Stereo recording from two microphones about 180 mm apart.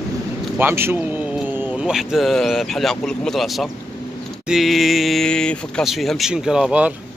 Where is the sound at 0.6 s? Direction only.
10° right (ahead or behind).